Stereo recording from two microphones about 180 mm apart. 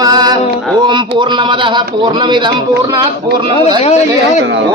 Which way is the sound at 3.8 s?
40° left (ahead or behind).